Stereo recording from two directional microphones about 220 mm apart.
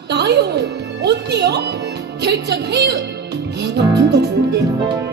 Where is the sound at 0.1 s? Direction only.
50° right (ahead or behind).